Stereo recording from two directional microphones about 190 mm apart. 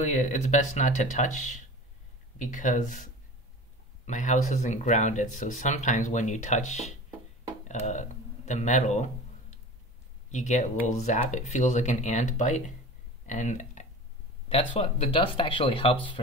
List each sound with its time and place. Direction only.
0.0 s speech: 40° left (ahead or behind)
10.3 s speech: 40° left (ahead or behind)